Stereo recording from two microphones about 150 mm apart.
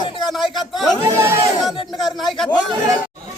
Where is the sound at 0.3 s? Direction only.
Centre (ahead or behind).